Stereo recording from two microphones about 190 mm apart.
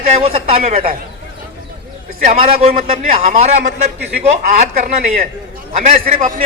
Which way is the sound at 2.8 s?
45° right (ahead or behind).